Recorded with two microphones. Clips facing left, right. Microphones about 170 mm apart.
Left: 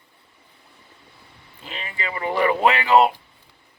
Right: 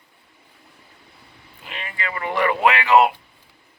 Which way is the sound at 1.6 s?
30° left (ahead or behind).